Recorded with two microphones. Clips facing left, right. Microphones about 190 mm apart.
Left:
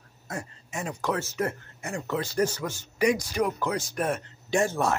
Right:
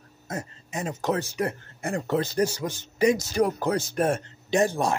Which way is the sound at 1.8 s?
35° right (ahead or behind).